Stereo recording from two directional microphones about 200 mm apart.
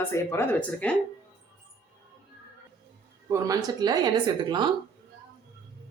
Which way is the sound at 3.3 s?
15° right (ahead or behind).